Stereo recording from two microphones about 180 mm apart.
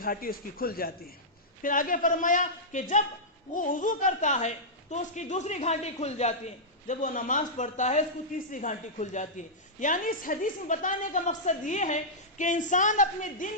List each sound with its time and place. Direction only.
0.0 s a woman's voice: 55° left (ahead or behind)